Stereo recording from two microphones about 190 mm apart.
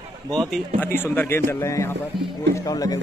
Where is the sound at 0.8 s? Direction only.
10° left (ahead or behind).